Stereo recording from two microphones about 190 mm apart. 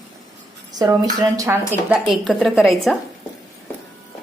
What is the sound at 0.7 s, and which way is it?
Speech, 20° right (ahead or behind).